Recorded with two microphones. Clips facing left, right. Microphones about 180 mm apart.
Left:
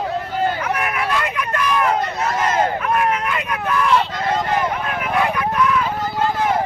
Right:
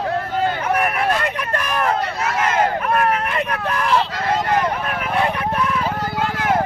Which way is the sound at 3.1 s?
40° right (ahead or behind).